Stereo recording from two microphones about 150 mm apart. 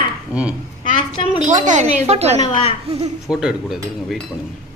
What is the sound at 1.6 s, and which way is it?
Speech, 50° right (ahead or behind).